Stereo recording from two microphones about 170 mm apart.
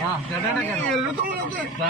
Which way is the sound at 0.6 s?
5° left (ahead or behind).